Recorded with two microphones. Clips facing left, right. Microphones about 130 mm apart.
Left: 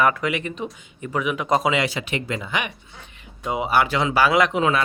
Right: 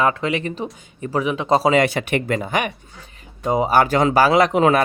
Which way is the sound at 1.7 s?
50° right (ahead or behind).